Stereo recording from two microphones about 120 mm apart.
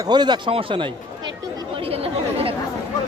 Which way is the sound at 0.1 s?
35° right (ahead or behind).